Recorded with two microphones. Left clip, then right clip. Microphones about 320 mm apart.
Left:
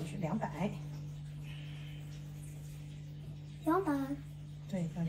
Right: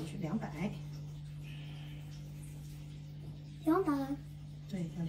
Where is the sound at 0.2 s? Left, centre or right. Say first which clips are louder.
Left 4 dB; centre.